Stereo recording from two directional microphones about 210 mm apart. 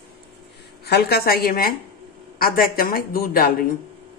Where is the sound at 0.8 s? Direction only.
50° left (ahead or behind).